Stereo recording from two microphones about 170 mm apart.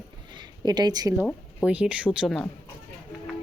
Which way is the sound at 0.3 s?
25° right (ahead or behind).